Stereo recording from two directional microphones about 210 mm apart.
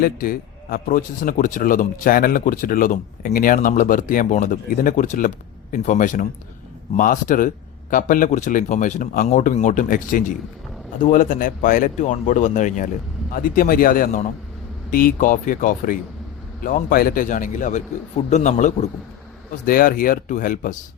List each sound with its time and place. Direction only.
0.0 s a man's voice: 45° left (ahead or behind)